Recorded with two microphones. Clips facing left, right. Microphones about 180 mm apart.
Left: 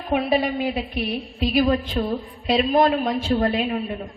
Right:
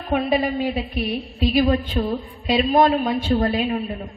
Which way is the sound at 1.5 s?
35° right (ahead or behind).